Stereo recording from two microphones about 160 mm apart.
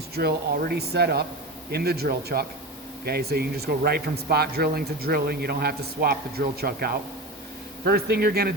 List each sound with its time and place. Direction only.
0.2 s speech: 70° right (ahead or behind)